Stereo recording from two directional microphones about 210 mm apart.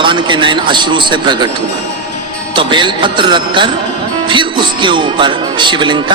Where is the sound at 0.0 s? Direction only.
20° right (ahead or behind).